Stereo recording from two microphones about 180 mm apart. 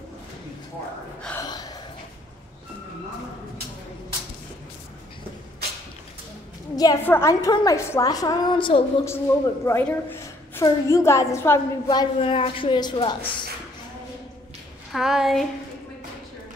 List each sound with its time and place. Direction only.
1.4 s gasp: 20° left (ahead or behind)
6.7 s a woman's voice: 20° left (ahead or behind)
9.0 s a woman's voice: 15° left (ahead or behind)
14.9 s speech: centre (ahead or behind)